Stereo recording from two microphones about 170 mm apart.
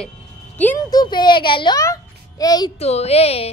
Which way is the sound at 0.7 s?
25° left (ahead or behind).